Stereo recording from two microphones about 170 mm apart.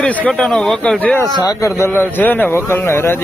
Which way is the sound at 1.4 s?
20° left (ahead or behind).